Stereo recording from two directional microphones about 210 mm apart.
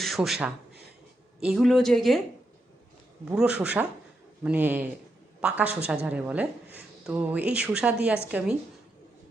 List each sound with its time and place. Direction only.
0.0 s speech: centre (ahead or behind)
3.2 s speech: 5° right (ahead or behind)